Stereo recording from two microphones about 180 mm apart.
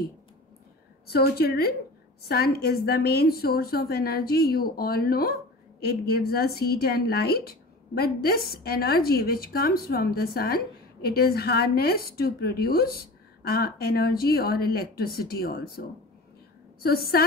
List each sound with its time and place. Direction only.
1.0 s a woman's voice: 60° left (ahead or behind)
16.8 s a woman's voice: 60° left (ahead or behind)